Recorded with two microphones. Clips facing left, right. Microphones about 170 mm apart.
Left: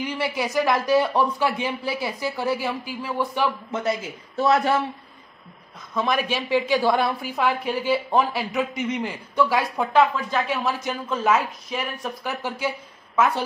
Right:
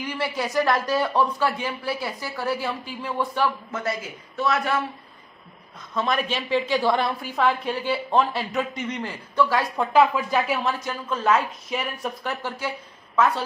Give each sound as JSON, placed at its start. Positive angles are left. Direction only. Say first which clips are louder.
{"t": 0.2, "sound": "a woman's voice", "louder": "even", "side_deg": 10}
{"t": 4.4, "sound": "speech", "louder": "left 4 dB", "side_deg": 30}
{"t": 5.9, "sound": "a woman's voice", "louder": "left 1 dB", "side_deg": 5}
{"t": 10.1, "sound": "a woman's voice", "louder": "right 1 dB", "side_deg": -10}